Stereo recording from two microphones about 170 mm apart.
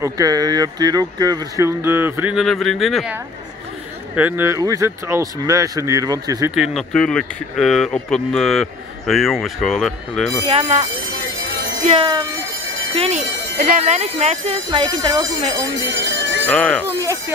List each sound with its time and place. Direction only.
0.0 s speech: 20° right (ahead or behind)
6.5 s speech: centre (ahead or behind)
10.4 s speech: 40° right (ahead or behind)
12.0 s speech: 25° right (ahead or behind)
12.9 s speech: 35° right (ahead or behind)
13.6 s speech: 45° right (ahead or behind); by 15.6 s 25° right (ahead or behind)
16.1 s jingle bell: 90° right
16.4 s speech: 5° left (ahead or behind)